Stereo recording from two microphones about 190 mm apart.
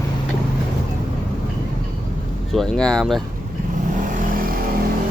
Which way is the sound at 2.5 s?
5° left (ahead or behind).